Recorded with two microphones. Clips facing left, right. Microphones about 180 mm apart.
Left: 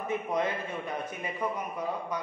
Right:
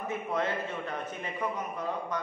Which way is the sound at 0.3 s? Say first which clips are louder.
Right 2 dB; 15° left (ahead or behind).